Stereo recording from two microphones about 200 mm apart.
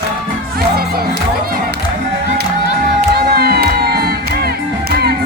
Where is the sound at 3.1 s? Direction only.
50° right (ahead or behind).